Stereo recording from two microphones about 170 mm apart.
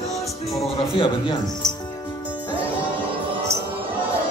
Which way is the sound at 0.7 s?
35° left (ahead or behind).